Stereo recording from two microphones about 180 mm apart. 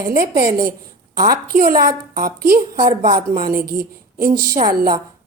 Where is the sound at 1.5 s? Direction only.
55° right (ahead or behind).